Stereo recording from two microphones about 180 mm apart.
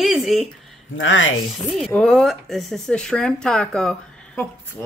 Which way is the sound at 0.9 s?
90° left.